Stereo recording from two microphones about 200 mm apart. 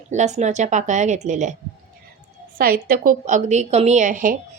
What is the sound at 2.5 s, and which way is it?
A woman's voice, 45° right (ahead or behind).